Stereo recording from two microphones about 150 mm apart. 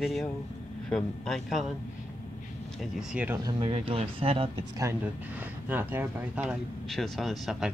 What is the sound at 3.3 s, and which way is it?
Speech, 30° right (ahead or behind).